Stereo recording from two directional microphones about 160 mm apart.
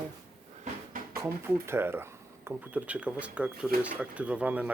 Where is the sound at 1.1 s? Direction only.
15° right (ahead or behind).